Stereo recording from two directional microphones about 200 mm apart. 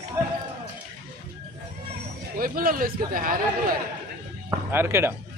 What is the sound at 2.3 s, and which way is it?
A man's voice, 45° right (ahead or behind).